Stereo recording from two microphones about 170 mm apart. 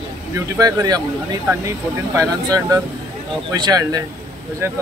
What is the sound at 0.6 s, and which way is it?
Speech, 20° right (ahead or behind).